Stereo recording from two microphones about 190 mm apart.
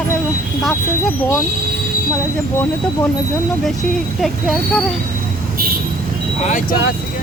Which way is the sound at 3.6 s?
Centre (ahead or behind).